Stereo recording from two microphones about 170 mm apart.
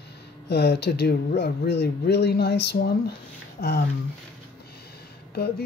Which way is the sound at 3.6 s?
45° left (ahead or behind).